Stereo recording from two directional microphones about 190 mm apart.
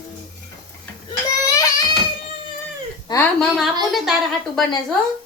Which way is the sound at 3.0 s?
15° left (ahead or behind).